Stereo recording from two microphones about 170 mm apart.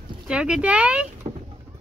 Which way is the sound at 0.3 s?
5° right (ahead or behind).